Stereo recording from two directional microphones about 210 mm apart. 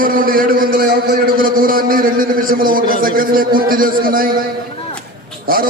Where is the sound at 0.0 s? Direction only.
40° right (ahead or behind).